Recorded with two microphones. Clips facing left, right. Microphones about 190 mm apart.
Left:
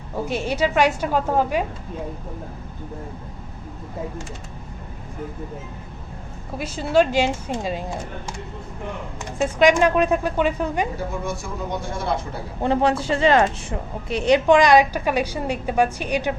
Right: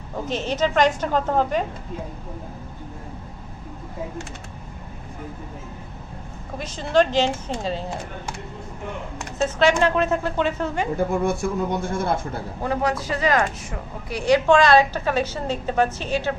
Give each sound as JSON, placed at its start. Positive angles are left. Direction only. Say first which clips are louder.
{"t": 0.3, "sound": "a woman's voice", "louder": "even", "side_deg": 10}
{"t": 6.6, "sound": "a woman's voice", "louder": "left 1 dB", "side_deg": 10}
{"t": 9.4, "sound": "a woman's voice", "louder": "left 2 dB", "side_deg": 15}
{"t": 11.3, "sound": "speech", "louder": "right 5 dB", "side_deg": -55}
{"t": 12.6, "sound": "a woman's voice", "louder": "left 4 dB", "side_deg": 30}